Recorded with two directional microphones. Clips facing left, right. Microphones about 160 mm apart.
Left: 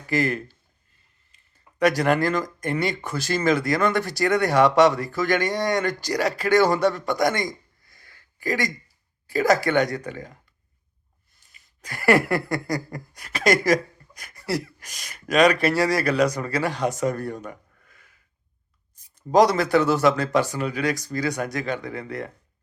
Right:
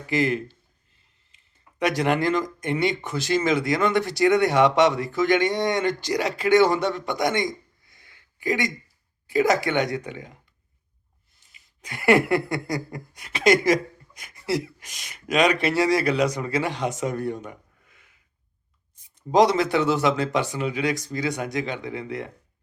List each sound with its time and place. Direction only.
0.1 s a man's voice: 20° right (ahead or behind)
11.8 s speech: 20° right (ahead or behind)
18.9 s speech: 20° right (ahead or behind)